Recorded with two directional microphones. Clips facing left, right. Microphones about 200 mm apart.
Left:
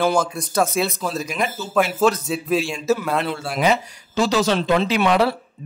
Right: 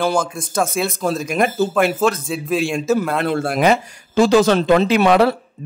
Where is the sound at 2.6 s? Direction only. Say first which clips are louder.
Right 3 dB; 50° right (ahead or behind).